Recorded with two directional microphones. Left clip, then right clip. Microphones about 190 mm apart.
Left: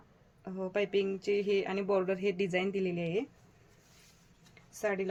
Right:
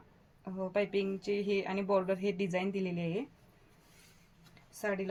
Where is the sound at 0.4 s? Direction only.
40° left (ahead or behind).